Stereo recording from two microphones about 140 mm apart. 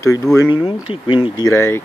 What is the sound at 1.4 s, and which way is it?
Speech, 20° left (ahead or behind).